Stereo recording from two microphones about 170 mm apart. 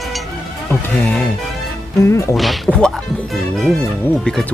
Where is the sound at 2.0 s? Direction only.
15° left (ahead or behind).